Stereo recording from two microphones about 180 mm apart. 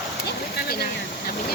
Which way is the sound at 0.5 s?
60° left (ahead or behind).